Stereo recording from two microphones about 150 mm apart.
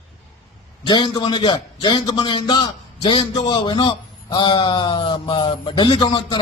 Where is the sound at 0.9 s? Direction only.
30° left (ahead or behind).